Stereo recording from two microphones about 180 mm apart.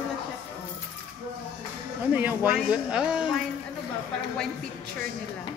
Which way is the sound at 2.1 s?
10° right (ahead or behind).